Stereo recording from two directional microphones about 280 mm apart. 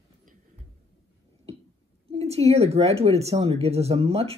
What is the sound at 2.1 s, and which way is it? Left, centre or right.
Speech, right.